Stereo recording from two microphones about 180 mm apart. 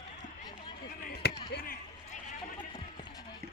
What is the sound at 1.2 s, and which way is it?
Basketball bounce, 65° left (ahead or behind).